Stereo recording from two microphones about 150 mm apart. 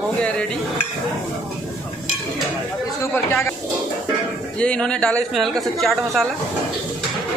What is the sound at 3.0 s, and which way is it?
Speech, 15° left (ahead or behind).